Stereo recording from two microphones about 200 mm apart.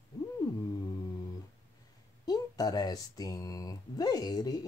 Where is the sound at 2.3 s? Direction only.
20° left (ahead or behind).